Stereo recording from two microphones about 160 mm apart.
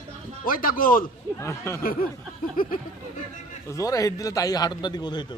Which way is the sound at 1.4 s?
15° left (ahead or behind).